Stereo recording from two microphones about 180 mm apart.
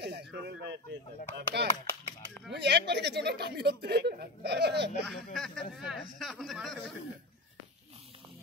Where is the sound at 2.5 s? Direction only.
70° right (ahead or behind).